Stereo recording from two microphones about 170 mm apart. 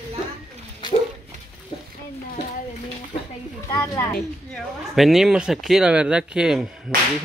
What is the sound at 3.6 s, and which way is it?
Speech, 20° left (ahead or behind).